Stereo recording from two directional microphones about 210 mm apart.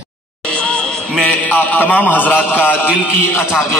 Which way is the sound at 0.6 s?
5° left (ahead or behind).